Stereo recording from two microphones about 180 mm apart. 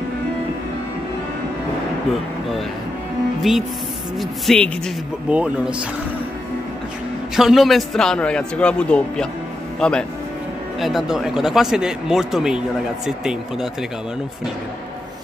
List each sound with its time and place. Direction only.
3.4 s speech: centre (ahead or behind)
7.3 s speech: centre (ahead or behind)